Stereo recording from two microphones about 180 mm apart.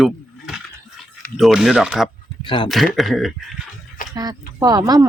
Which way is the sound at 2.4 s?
25° left (ahead or behind).